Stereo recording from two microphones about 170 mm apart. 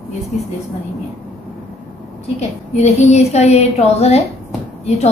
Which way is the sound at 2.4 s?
40° left (ahead or behind).